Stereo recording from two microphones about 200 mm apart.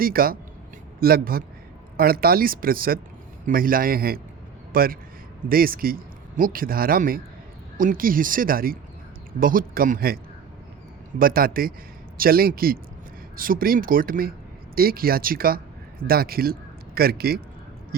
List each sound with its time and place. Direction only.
0.0 s a man's voice: 45° right (ahead or behind)
11.2 s speech: 45° right (ahead or behind)